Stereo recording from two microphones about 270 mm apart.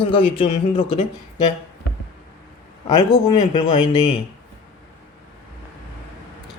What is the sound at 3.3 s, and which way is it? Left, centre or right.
Speech, centre.